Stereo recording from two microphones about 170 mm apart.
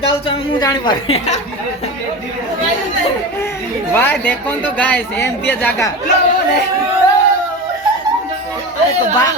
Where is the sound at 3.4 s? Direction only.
15° left (ahead or behind).